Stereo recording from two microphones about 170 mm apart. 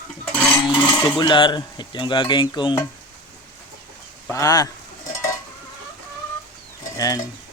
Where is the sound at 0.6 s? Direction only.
25° left (ahead or behind).